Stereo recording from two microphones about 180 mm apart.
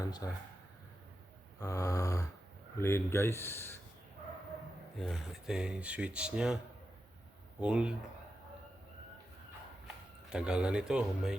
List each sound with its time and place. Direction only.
0.0 s a sound: 20° left (ahead or behind)
1.5 s a sound: 20° left (ahead or behind)
2.7 s speech: 15° left (ahead or behind)
4.9 s speech: centre (ahead or behind)
7.6 s speech: 5° right (ahead or behind)
10.3 s speech: 5° right (ahead or behind)